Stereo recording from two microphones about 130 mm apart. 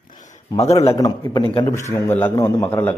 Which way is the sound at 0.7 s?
25° left (ahead or behind).